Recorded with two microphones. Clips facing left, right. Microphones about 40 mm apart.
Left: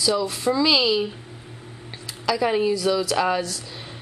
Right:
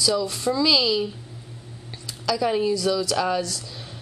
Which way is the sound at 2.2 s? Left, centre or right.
Centre.